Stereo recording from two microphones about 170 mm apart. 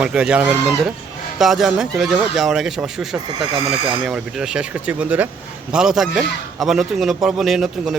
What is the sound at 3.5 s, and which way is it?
Speech, 30° right (ahead or behind).